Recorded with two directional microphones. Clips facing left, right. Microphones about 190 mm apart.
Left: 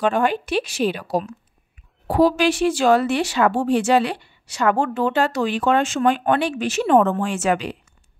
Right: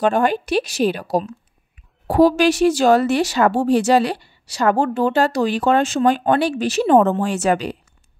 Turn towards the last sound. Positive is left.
turn(degrees=-40)  # may be behind; listen again after turning